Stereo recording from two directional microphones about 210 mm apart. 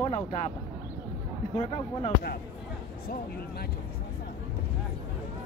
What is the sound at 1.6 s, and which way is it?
Speech, 30° left (ahead or behind).